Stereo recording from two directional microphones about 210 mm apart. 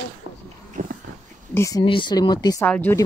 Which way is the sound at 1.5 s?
15° left (ahead or behind).